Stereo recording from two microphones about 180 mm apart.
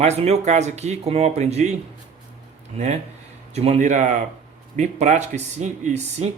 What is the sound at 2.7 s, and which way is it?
Speech, 35° right (ahead or behind).